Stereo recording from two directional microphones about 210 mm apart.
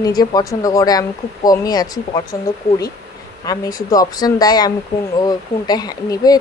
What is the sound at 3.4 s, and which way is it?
Speech, 15° left (ahead or behind).